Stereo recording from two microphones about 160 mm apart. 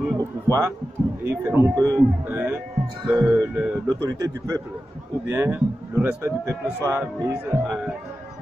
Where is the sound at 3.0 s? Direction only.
25° right (ahead or behind).